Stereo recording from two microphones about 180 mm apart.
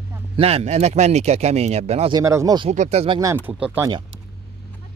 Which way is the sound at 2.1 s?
20° right (ahead or behind).